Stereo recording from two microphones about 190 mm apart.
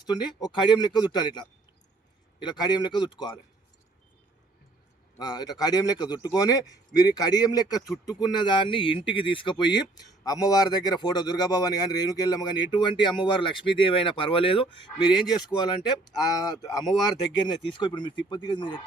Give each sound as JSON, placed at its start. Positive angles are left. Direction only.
{"t": 0.0, "sound": "a man's voice", "side_deg": 20}
{"t": 5.1, "sound": "a man's voice", "side_deg": 20}